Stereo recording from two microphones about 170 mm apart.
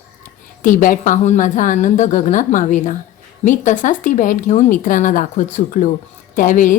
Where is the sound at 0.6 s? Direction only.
50° left (ahead or behind).